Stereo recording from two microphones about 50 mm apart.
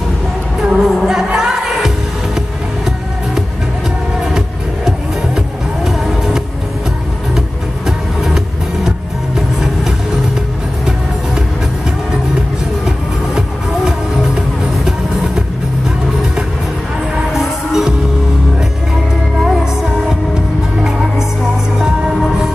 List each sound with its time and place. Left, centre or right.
0.7 s music: centre
5.9 s vehicle: centre
7.3 s music: centre
17.3 s music: centre
19.4 s music: centre
21.7 s music: centre